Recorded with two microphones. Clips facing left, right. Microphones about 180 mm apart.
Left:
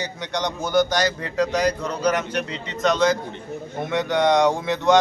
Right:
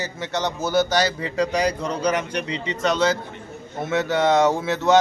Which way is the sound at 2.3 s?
5° left (ahead or behind).